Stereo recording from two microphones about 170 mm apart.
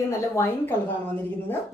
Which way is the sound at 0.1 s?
15° left (ahead or behind).